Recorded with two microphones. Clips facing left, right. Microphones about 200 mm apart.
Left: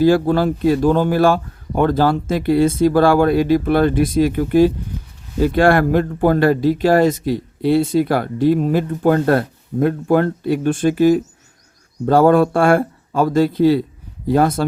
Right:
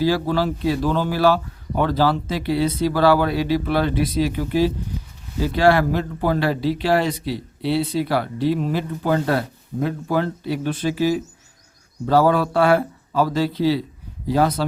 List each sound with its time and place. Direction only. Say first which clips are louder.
0.0 s speech: left 6 dB; 50° left (ahead or behind)